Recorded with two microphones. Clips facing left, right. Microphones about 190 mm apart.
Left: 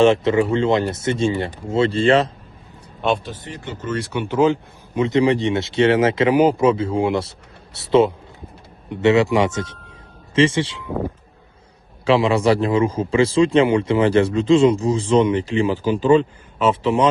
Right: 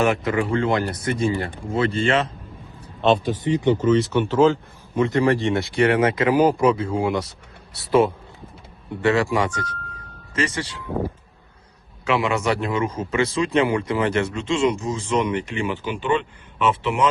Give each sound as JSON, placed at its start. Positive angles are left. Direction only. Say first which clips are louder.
{"t": 0.0, "sound": "speech", "louder": "left 6 dB", "side_deg": 25}
{"t": 3.2, "sound": "speech", "louder": "right 11 dB", "side_deg": -15}
{"t": 4.1, "sound": "speech", "louder": "right 1 dB", "side_deg": 15}
{"t": 12.0, "sound": "a man's voice", "louder": "left 6 dB", "side_deg": 30}